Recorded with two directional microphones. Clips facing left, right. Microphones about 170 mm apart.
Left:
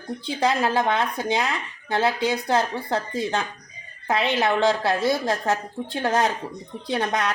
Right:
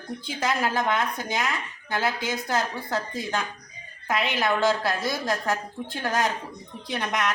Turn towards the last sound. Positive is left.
turn(degrees=30)  # may be behind; listen again after turning